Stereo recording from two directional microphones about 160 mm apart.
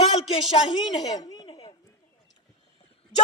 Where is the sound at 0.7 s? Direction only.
25° left (ahead or behind).